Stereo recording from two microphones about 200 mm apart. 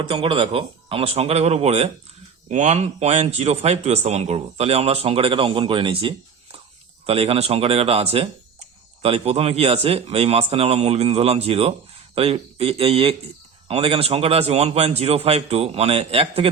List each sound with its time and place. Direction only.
0.0 s speech: 25° right (ahead or behind)